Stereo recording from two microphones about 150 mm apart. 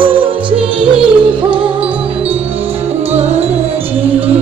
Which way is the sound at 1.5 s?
10° right (ahead or behind).